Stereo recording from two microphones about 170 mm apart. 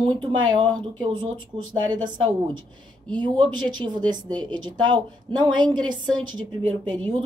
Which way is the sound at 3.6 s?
25° right (ahead or behind).